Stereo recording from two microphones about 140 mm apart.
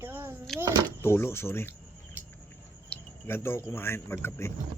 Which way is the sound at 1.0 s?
15° left (ahead or behind).